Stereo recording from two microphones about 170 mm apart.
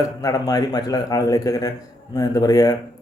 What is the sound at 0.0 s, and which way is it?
Speech, 20° left (ahead or behind).